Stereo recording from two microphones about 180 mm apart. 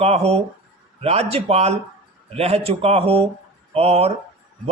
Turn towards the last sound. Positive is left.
turn(degrees=-35)  # may be behind; listen again after turning